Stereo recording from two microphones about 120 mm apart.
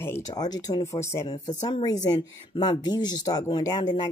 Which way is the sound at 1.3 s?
35° left (ahead or behind).